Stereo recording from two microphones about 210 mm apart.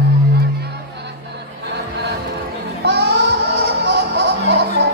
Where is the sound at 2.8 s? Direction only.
55° right (ahead or behind).